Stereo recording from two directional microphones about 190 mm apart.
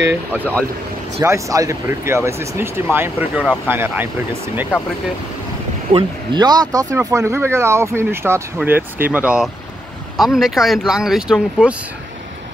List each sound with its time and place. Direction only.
0.1 s speech: 10° right (ahead or behind)
5.9 s speech: 20° right (ahead or behind); by 11.7 s 5° right (ahead or behind)